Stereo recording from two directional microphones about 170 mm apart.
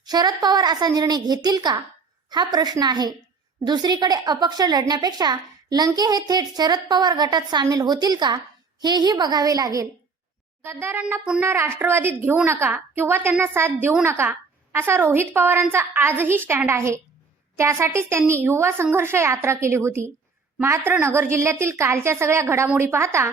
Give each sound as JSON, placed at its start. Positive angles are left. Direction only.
{"t": 0.0, "sound": "a woman's voice", "side_deg": -25}